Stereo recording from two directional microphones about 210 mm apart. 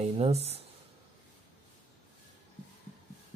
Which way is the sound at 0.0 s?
30° right (ahead or behind).